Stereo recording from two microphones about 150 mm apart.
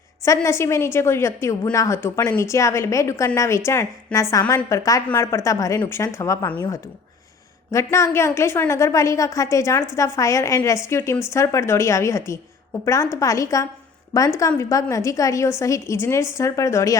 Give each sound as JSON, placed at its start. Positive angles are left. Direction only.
{"t": 0.3, "sound": "a woman's voice", "side_deg": 20}
{"t": 7.7, "sound": "a woman's voice", "side_deg": 20}